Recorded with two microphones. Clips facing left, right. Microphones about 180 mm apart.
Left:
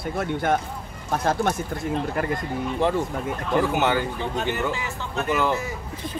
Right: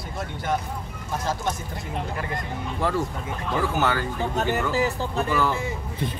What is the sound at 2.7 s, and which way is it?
Speech, 20° left (ahead or behind).